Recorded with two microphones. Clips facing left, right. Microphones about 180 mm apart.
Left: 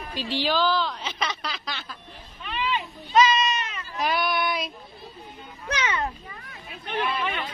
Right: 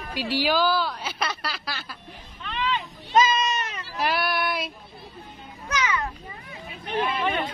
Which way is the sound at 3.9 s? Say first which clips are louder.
Even; 5° right (ahead or behind).